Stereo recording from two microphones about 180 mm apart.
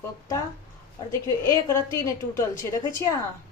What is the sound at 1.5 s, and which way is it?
A woman's voice, 15° left (ahead or behind).